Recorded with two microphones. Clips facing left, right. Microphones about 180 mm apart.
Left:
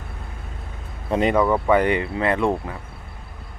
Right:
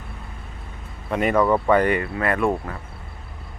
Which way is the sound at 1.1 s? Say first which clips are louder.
Left 2 dB; 25° left (ahead or behind).